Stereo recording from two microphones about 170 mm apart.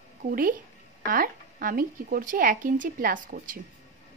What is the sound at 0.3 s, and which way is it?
A woman's voice, 55° right (ahead or behind).